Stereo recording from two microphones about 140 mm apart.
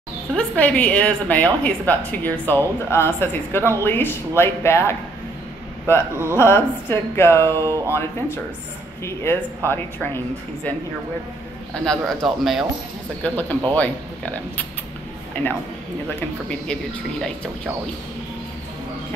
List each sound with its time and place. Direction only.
0.3 s a woman's voice: 10° left (ahead or behind)
9.0 s a woman's voice: 20° left (ahead or behind)
11.8 s speech: 5° left (ahead or behind)
13.2 s a woman's voice: 10° left (ahead or behind)